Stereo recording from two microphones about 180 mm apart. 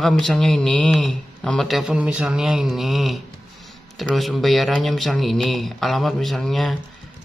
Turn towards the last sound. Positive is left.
turn(degrees=0)  # may be behind; listen again after turning